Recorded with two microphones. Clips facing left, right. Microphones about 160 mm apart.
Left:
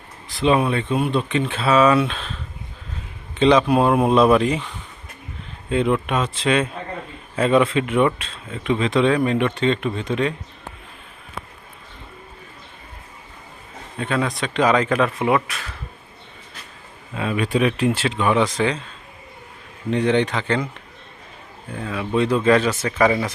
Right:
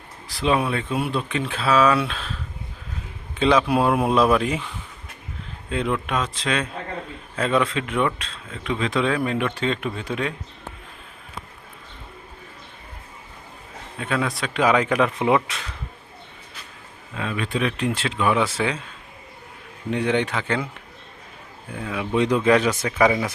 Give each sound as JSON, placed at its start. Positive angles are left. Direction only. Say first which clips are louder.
{"t": 0.3, "sound": "speech", "louder": "left 3 dB", "side_deg": 0}
{"t": 5.6, "sound": "speech", "louder": "left 5 dB", "side_deg": 0}
{"t": 14.0, "sound": "speech", "louder": "left 2 dB", "side_deg": 0}
{"t": 17.2, "sound": "speech", "louder": "left 5 dB", "side_deg": 10}
{"t": 19.9, "sound": "speech", "louder": "left 3 dB", "side_deg": -10}
{"t": 21.7, "sound": "speech", "louder": "left 1 dB", "side_deg": -10}